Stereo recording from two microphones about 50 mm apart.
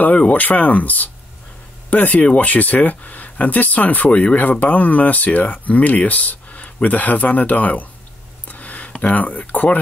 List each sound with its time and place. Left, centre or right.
0.3 s speech: left
8.5 s a sound: left
9.0 s speech: left